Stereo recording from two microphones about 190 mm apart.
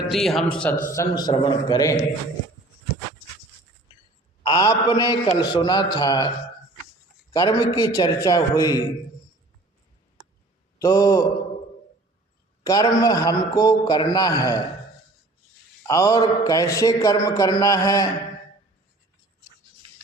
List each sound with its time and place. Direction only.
0.1 s a man's voice: centre (ahead or behind)
0.9 s a man's voice: 20° left (ahead or behind)
4.4 s a man's voice: 20° left (ahead or behind)
7.3 s a man's voice: 20° left (ahead or behind)
10.8 s a man's voice: 15° left (ahead or behind)
12.6 s a man's voice: 20° left (ahead or behind)
15.9 s a man's voice: 15° left (ahead or behind)